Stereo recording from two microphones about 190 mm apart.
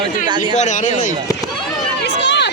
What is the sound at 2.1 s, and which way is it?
Chatter, 65° left (ahead or behind).